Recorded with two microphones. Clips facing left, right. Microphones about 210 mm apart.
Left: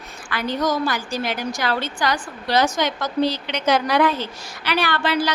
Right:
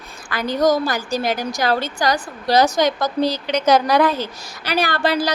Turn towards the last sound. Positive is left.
turn(degrees=-40)  # may be behind; listen again after turning